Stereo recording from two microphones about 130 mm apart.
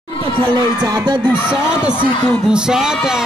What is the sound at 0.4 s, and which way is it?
Speech, 40° right (ahead or behind).